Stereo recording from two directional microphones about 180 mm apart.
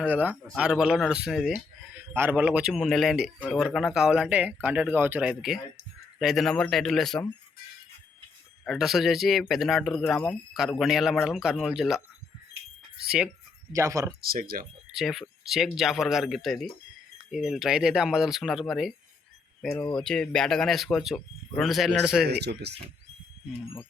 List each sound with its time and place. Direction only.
0.0 s speech: 10° right (ahead or behind)
8.6 s speech: centre (ahead or behind)
13.1 s speech: 5° right (ahead or behind)
13.7 s speech: 15° right (ahead or behind)
14.2 s speech: 55° right (ahead or behind)
14.9 s speech: centre (ahead or behind)
22.3 s speech: 65° right (ahead or behind)